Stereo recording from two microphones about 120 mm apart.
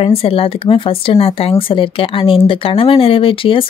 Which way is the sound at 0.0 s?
55° left (ahead or behind).